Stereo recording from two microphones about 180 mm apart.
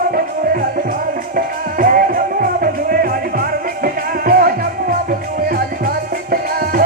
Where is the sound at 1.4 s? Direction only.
50° right (ahead or behind).